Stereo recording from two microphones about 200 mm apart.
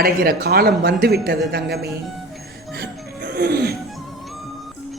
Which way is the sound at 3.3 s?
50° right (ahead or behind).